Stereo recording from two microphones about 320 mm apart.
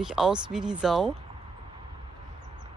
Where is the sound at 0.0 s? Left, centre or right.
Centre.